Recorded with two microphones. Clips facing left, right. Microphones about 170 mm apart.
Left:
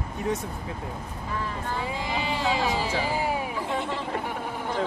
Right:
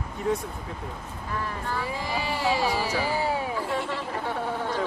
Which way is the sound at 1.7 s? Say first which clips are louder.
Even; 20° left (ahead or behind).